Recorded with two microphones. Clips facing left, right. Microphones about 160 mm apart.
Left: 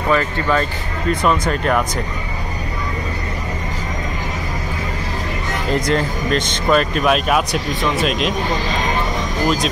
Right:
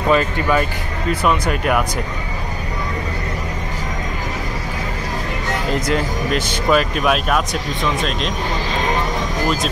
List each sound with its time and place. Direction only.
0.1 s speech: 15° right (ahead or behind)
5.9 s speech: 5° right (ahead or behind)